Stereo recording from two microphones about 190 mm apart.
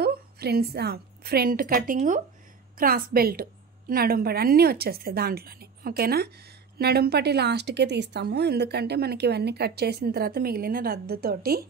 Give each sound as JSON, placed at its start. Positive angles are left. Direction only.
{"t": 0.0, "sound": "a woman's voice", "side_deg": -55}